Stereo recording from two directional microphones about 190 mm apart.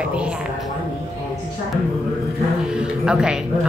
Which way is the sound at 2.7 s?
5° right (ahead or behind).